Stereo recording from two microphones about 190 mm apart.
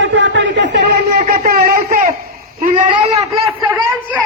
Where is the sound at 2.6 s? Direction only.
30° right (ahead or behind).